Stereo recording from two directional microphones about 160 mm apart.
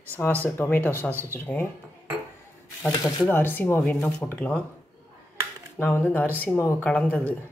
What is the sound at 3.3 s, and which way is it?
Speech, 15° left (ahead or behind).